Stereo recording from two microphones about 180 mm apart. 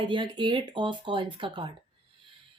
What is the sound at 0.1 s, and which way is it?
Speech, 25° right (ahead or behind).